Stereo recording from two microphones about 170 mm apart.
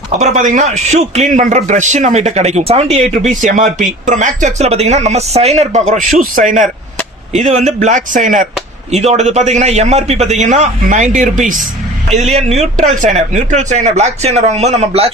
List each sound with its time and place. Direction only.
0.2 s a man's voice: 45° right (ahead or behind)